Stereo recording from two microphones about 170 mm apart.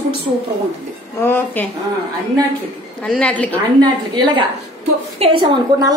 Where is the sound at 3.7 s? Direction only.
25° right (ahead or behind).